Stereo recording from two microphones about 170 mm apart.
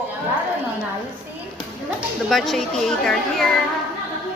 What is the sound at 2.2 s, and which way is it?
A woman's voice, centre (ahead or behind).